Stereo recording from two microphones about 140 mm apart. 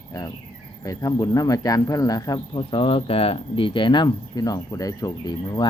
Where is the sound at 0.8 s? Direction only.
25° left (ahead or behind).